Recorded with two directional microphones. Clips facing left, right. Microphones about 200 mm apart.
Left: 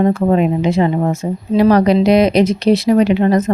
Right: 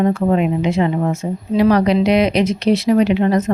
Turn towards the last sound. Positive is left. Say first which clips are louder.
# left 2 dB
turn(degrees=40)  # may be behind; listen again after turning